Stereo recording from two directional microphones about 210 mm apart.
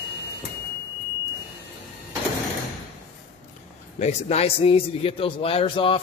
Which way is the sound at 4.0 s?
30° left (ahead or behind).